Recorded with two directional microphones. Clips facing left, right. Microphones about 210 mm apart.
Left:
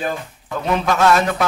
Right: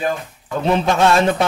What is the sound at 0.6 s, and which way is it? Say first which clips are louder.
Speech: right 2 dB; 30° right (ahead or behind).